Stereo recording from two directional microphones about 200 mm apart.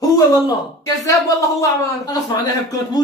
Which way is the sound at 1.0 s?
15° left (ahead or behind).